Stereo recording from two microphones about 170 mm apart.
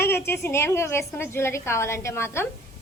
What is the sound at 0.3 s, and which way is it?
A woman's voice, 15° left (ahead or behind).